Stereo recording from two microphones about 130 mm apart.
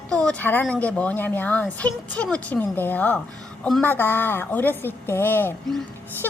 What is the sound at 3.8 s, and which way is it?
Speech, 15° left (ahead or behind).